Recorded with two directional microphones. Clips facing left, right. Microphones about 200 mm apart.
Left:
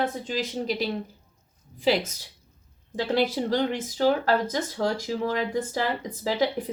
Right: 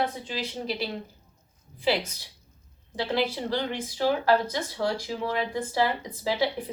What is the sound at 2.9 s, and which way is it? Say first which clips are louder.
Speech: left 3 dB; 45° left (ahead or behind).